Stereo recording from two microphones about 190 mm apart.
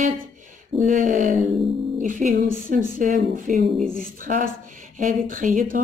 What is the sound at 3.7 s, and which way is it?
Speech, 5° left (ahead or behind).